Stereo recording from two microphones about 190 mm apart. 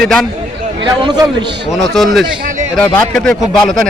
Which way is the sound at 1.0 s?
20° right (ahead or behind).